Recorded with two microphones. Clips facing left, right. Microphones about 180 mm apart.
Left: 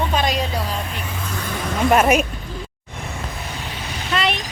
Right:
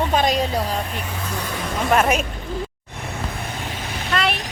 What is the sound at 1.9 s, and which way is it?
Speech, 10° left (ahead or behind).